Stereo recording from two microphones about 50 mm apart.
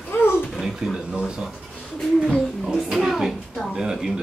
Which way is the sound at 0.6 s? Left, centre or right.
Centre.